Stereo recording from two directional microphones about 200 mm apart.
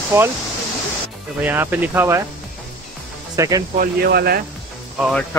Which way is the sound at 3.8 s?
50° right (ahead or behind).